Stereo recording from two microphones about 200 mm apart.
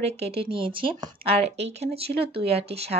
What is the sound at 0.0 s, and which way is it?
A woman's voice, 30° right (ahead or behind).